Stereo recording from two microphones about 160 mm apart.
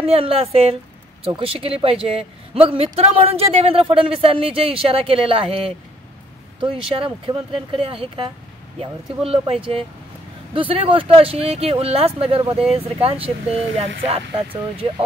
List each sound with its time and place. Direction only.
0.0 s a man's voice: 35° right (ahead or behind)
7.0 s a man's voice: 35° right (ahead or behind)
9.3 s a man's voice: 35° right (ahead or behind)